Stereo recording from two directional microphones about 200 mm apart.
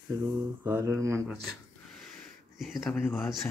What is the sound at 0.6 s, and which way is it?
Mantra, 15° right (ahead or behind).